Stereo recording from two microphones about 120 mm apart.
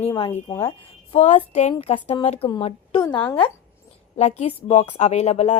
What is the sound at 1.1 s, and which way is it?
Speech, 60° left (ahead or behind).